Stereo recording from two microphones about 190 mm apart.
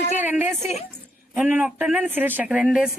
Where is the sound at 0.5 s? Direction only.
35° left (ahead or behind).